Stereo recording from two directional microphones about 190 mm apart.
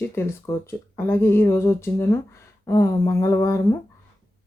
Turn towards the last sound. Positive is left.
turn(degrees=15)  # may be behind; listen again after turning